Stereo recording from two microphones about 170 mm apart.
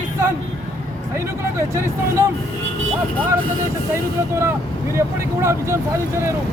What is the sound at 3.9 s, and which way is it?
Speech, 15° right (ahead or behind).